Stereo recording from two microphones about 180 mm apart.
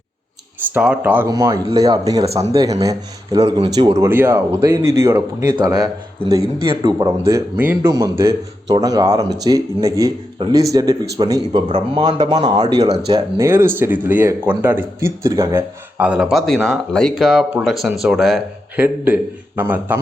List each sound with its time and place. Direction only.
0.7 s speech: 5° right (ahead or behind)
1.3 s a man's voice: 20° right (ahead or behind)
16.0 s speech: 5° right (ahead or behind)